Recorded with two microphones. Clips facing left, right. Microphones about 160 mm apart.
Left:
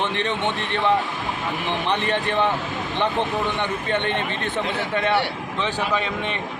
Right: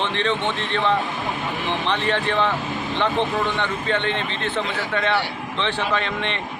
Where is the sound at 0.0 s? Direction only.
15° left (ahead or behind).